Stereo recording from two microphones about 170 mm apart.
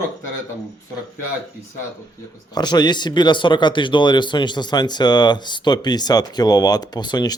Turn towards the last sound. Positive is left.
turn(degrees=25)  # may be behind; listen again after turning